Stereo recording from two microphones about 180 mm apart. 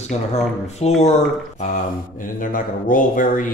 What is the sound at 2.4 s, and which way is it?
Speech, 50° left (ahead or behind).